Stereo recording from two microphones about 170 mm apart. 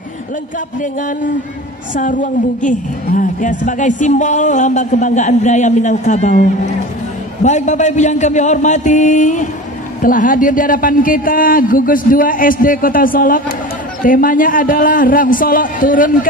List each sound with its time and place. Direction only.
2.0 s a woman's voice: 50° left (ahead or behind)